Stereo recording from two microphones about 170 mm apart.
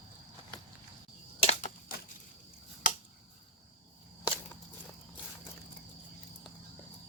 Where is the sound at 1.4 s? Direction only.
40° left (ahead or behind).